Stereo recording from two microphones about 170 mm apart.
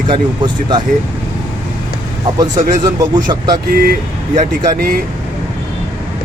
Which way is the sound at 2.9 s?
25° right (ahead or behind).